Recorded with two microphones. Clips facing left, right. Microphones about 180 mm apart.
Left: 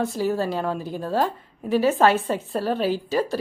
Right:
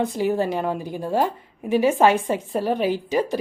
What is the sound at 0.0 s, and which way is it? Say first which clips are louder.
Speech: right 2 dB; 15° right (ahead or behind).